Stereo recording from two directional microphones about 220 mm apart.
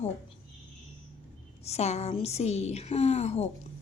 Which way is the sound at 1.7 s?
30° left (ahead or behind).